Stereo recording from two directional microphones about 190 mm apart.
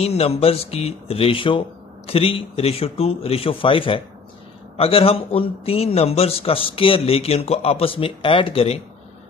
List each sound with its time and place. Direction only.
0.0 s a man's voice: 35° left (ahead or behind)